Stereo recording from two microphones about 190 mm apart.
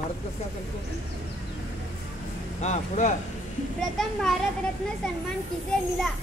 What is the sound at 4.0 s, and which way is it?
Speech, centre (ahead or behind).